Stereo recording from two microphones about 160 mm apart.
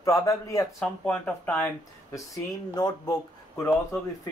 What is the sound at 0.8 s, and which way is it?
Speech, 5° left (ahead or behind).